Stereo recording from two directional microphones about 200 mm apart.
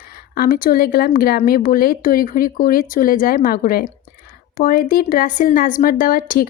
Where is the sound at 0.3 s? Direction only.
45° left (ahead or behind).